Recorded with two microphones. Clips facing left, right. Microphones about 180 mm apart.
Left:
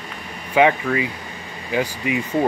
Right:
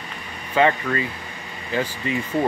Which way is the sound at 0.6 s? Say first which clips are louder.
Left 3 dB; 15° left (ahead or behind).